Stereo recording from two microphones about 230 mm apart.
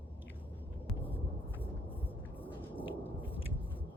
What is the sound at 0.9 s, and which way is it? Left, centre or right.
Vehicle, centre.